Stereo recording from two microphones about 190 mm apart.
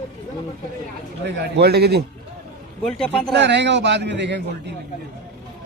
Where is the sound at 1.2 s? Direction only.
60° right (ahead or behind).